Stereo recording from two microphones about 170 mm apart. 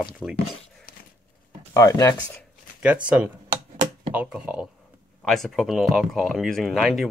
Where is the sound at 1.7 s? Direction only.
20° left (ahead or behind).